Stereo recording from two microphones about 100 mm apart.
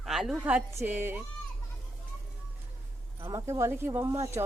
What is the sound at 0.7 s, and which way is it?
Speech, 25° right (ahead or behind).